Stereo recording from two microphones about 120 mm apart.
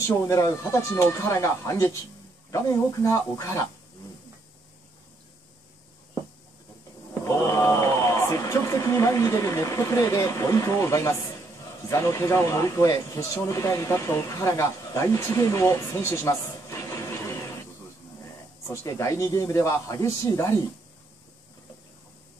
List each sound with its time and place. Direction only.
0.3 s speech: 25° left (ahead or behind)
7.2 s speech: 30° left (ahead or behind)
18.7 s speech: 25° left (ahead or behind)